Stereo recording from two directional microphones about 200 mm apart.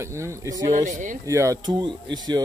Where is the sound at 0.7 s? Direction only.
40° right (ahead or behind).